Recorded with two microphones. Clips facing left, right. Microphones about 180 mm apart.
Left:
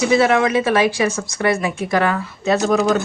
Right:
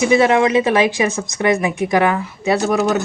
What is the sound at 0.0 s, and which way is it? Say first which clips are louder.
Speech: right 2 dB; 20° right (ahead or behind).